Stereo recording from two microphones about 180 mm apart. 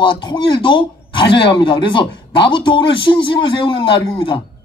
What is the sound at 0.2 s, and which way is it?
Speech, 25° left (ahead or behind).